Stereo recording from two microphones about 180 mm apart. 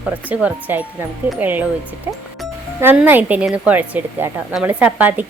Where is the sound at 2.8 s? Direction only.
10° right (ahead or behind).